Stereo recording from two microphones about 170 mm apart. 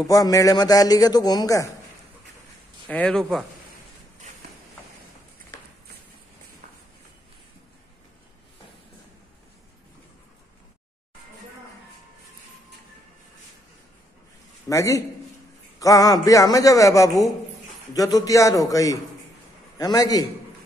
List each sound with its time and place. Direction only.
0.0 s a man's voice: 20° left (ahead or behind)
2.9 s speech: 5° left (ahead or behind)
14.7 s a man's voice: 20° left (ahead or behind)